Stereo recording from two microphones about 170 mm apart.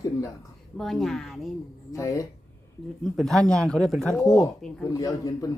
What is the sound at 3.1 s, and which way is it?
Speech, centre (ahead or behind).